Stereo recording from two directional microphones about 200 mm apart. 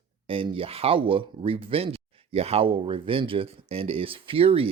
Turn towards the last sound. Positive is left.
turn(degrees=-30)  # may be behind; listen again after turning